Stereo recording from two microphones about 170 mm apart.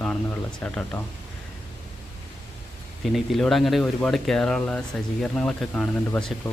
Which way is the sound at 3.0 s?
Centre (ahead or behind).